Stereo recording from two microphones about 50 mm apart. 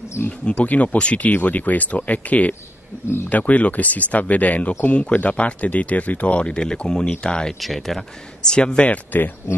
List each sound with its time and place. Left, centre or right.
0.2 s speech: left
0.5 s speech: left
7.6 s speech: centre
8.5 s speech: centre